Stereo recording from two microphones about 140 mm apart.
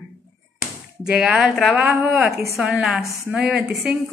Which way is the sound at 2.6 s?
5° right (ahead or behind).